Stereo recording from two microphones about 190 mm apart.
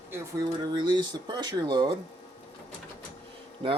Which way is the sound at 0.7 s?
25° right (ahead or behind).